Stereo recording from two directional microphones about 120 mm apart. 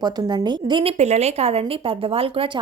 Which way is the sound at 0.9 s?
65° right (ahead or behind).